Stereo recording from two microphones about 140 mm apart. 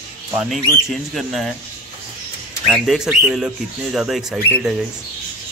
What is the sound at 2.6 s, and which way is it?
Speech, centre (ahead or behind).